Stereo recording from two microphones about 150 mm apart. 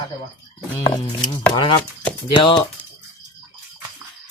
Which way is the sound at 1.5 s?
30° left (ahead or behind).